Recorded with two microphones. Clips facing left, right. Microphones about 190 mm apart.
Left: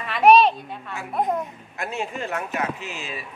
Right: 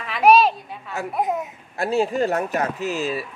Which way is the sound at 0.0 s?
Centre (ahead or behind).